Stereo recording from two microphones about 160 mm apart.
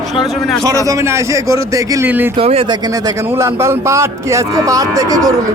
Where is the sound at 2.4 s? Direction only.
35° right (ahead or behind).